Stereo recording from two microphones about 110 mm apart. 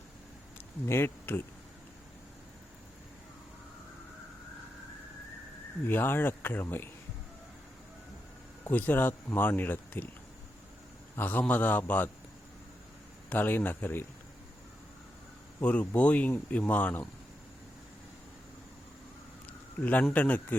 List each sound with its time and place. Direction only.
0.9 s speech: 20° left (ahead or behind)
5.9 s speech: 20° left (ahead or behind)
8.6 s speech: 15° left (ahead or behind)
11.2 s speech: 15° left (ahead or behind)
13.3 s speech: 15° left (ahead or behind)
15.6 s speech: 15° left (ahead or behind)
19.8 s speech: 15° left (ahead or behind)